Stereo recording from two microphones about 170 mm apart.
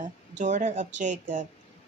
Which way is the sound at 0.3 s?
45° right (ahead or behind).